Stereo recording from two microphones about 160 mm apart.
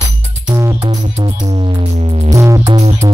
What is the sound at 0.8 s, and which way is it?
Music, 40° right (ahead or behind).